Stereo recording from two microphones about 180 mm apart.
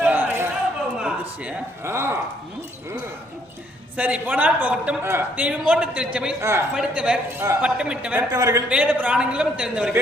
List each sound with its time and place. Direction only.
0.0 s a sound: 10° right (ahead or behind)
0.9 s speech: 5° right (ahead or behind)
3.9 s a woman's voice: 10° right (ahead or behind)
8.3 s a man's voice: 20° right (ahead or behind)
8.7 s a man's voice: 10° right (ahead or behind)